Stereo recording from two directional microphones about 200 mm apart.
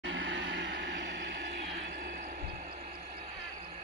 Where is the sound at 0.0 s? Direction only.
70° right (ahead or behind).